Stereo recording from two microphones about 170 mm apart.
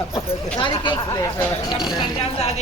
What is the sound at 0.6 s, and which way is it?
Speech, 30° left (ahead or behind).